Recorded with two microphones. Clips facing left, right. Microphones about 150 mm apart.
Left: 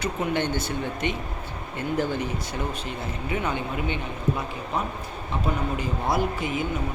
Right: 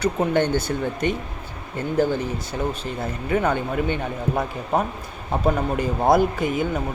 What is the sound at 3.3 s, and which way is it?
Speech, 50° right (ahead or behind).